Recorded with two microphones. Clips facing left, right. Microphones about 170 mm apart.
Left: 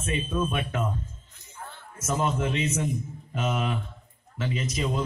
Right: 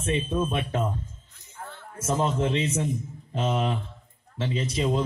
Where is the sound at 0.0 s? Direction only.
30° right (ahead or behind).